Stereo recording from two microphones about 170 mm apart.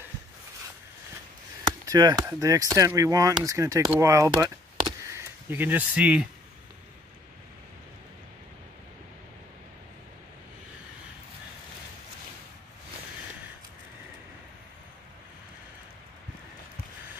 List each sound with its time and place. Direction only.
1.9 s speech: 20° right (ahead or behind)